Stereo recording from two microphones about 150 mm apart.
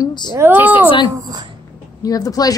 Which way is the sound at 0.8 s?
35° left (ahead or behind).